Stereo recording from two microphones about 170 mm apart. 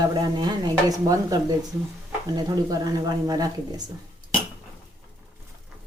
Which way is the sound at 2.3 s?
20° right (ahead or behind).